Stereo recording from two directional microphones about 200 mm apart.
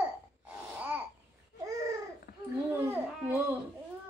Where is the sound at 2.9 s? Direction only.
10° right (ahead or behind).